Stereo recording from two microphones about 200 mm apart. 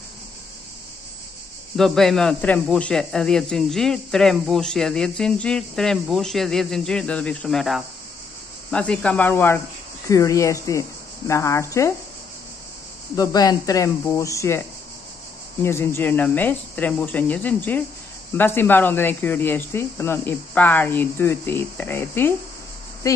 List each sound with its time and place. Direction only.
1.8 s speech: centre (ahead or behind)
13.1 s speech: 20° left (ahead or behind)
15.6 s speech: 10° left (ahead or behind)